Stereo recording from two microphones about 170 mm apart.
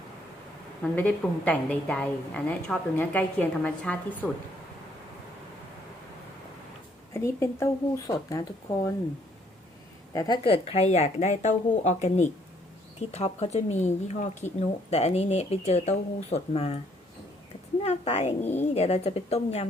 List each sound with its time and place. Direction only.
0.8 s a woman's voice: 10° left (ahead or behind)
7.1 s speech: 15° left (ahead or behind)
10.1 s a woman's voice: 20° left (ahead or behind)
17.8 s a woman's voice: 40° left (ahead or behind)